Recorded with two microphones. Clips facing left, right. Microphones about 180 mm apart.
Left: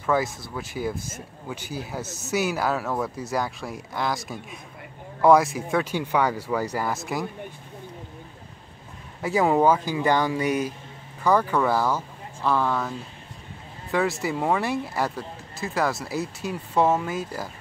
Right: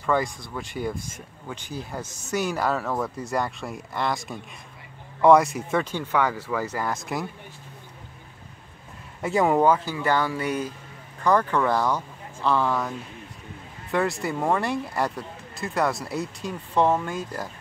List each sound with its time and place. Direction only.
0.0 s speech: 5° left (ahead or behind)
5.9 s speech: 10° left (ahead or behind)
9.2 s speech: centre (ahead or behind)
13.9 s speech: centre (ahead or behind)